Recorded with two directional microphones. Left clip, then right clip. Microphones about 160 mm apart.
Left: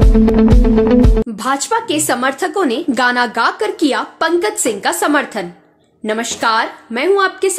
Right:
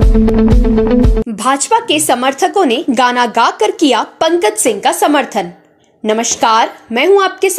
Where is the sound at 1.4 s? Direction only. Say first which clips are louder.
Right 6 dB; 10° right (ahead or behind).